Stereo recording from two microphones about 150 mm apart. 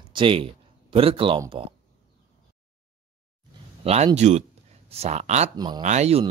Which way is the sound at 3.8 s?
45° right (ahead or behind).